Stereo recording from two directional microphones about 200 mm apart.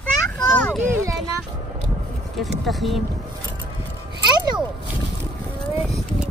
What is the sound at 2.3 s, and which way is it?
Speech, centre (ahead or behind).